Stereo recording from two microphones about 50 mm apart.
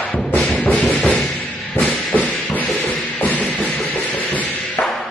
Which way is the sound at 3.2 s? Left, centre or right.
Left.